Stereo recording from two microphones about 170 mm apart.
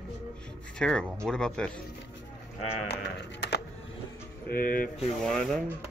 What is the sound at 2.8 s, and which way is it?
Sheep, 75° left (ahead or behind).